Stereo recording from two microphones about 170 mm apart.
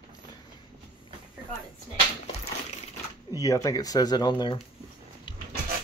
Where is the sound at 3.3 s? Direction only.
20° left (ahead or behind).